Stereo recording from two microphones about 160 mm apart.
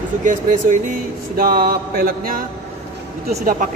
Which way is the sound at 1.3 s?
65° right (ahead or behind).